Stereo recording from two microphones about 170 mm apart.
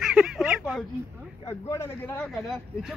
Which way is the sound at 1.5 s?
15° left (ahead or behind).